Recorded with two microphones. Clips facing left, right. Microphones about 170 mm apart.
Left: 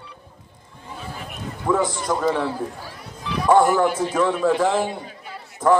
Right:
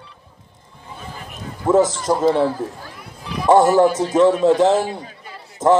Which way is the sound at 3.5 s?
20° right (ahead or behind).